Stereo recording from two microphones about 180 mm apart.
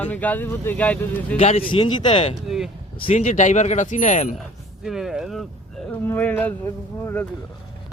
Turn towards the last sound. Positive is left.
turn(degrees=10)  # may be behind; listen again after turning